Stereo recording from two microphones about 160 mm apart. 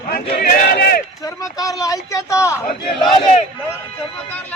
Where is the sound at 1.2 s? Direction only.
20° left (ahead or behind).